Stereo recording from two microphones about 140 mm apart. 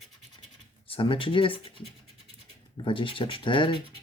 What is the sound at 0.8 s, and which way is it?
Speech, 40° left (ahead or behind).